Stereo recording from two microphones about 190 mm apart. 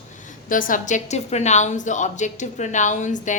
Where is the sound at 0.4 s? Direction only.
45° left (ahead or behind).